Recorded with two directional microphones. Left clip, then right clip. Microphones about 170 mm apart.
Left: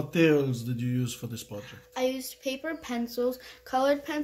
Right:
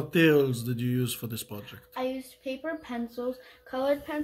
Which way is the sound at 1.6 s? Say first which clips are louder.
Left 4 dB; 55° left (ahead or behind).